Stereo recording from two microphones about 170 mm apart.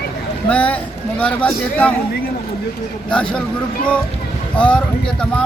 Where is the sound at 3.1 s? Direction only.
5° left (ahead or behind).